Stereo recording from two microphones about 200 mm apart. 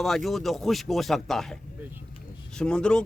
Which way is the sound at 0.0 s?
Centre (ahead or behind).